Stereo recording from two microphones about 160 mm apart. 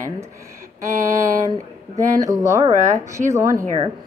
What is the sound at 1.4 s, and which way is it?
Speech, 20° right (ahead or behind).